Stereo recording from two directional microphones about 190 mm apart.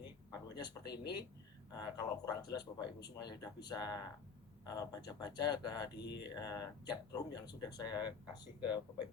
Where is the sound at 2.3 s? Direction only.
20° left (ahead or behind).